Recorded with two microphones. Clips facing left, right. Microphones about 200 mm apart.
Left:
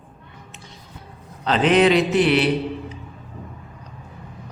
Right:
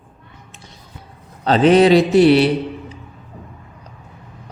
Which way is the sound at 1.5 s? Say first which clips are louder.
Right 5 dB; 35° right (ahead or behind).